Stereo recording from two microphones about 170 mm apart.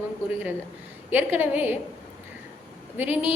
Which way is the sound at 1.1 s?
10° right (ahead or behind).